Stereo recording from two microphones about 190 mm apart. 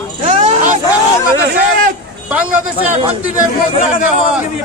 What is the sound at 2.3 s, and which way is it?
Speech, 5° right (ahead or behind).